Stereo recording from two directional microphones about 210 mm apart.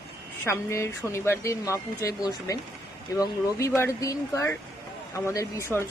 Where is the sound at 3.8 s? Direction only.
15° left (ahead or behind).